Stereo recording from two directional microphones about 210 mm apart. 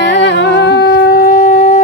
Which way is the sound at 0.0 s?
55° left (ahead or behind).